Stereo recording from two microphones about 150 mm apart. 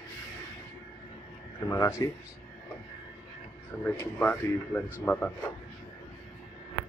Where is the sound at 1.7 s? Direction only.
20° left (ahead or behind).